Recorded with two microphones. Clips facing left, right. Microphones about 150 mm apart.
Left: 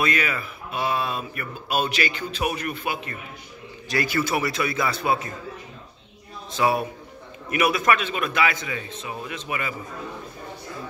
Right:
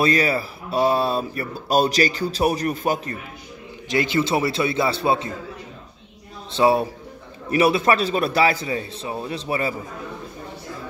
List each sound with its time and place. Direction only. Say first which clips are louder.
0.0 s speech: right 6 dB; 35° right (ahead or behind)
3.9 s a man's voice: right 4 dB; 20° right (ahead or behind)
6.5 s a man's voice: right 5 dB; 30° right (ahead or behind)